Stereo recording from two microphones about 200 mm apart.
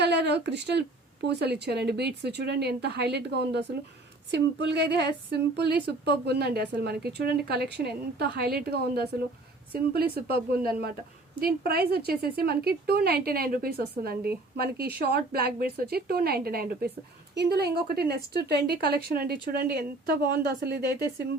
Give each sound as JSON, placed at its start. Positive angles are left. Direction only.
{"t": 0.0, "sound": "a woman's voice", "side_deg": -55}